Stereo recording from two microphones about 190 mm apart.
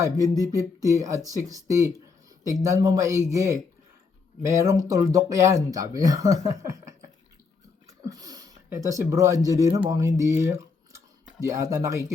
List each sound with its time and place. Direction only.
0.4 s speech: 15° right (ahead or behind)